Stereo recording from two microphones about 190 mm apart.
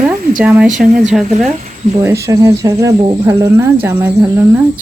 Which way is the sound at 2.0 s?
15° right (ahead or behind).